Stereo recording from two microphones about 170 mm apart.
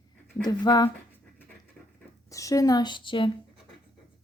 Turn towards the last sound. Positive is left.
turn(degrees=30)  # may be behind; listen again after turning